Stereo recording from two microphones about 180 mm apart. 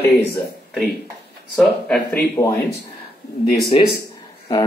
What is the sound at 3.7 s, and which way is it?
Speech, 35° left (ahead or behind).